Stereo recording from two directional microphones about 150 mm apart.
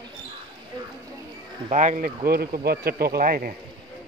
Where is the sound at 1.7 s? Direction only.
55° right (ahead or behind).